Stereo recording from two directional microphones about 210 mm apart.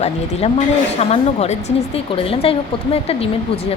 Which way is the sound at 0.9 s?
30° left (ahead or behind).